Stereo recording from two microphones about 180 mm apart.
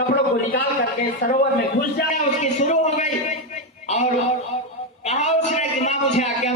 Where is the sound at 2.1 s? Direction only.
40° left (ahead or behind).